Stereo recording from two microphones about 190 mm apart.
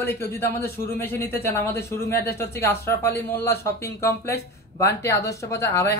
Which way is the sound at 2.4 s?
15° left (ahead or behind).